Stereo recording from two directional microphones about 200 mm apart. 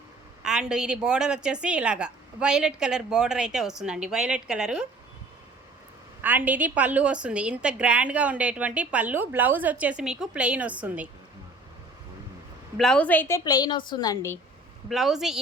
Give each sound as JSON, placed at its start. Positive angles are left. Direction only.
{"t": 0.4, "sound": "a woman's voice", "side_deg": -5}
{"t": 6.2, "sound": "a woman's voice", "side_deg": -10}
{"t": 12.7, "sound": "a woman's voice", "side_deg": 5}
{"t": 14.8, "sound": "a woman's voice", "side_deg": 0}